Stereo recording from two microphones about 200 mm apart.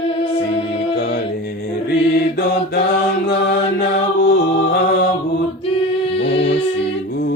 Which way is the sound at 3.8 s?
55° left (ahead or behind).